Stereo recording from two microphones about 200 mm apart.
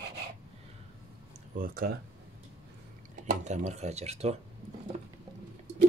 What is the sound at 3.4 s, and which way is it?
Speech, 35° right (ahead or behind).